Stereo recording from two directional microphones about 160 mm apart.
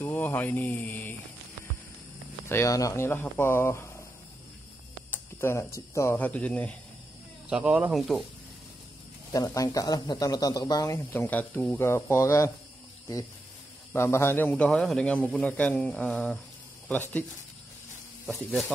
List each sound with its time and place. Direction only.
0.0 s speech: 15° left (ahead or behind)
2.4 s a man's voice: 20° left (ahead or behind)
5.1 s speech: 15° left (ahead or behind)
7.4 s speech: 5° right (ahead or behind)
9.3 s speech: 20° left (ahead or behind)
13.9 s a man's voice: 15° left (ahead or behind)
18.2 s speech: centre (ahead or behind)